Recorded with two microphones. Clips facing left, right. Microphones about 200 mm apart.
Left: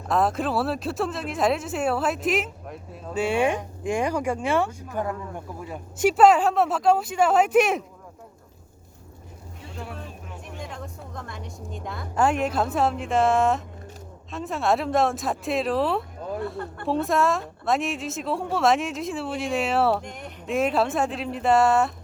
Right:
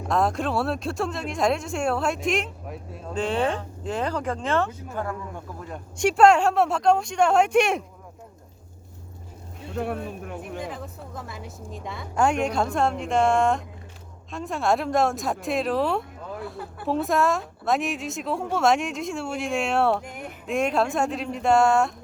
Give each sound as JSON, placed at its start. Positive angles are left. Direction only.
{"t": 0.1, "sound": "a woman's voice", "side_deg": 0}
{"t": 9.7, "sound": "speech", "side_deg": -55}
{"t": 10.6, "sound": "a woman's voice", "side_deg": -5}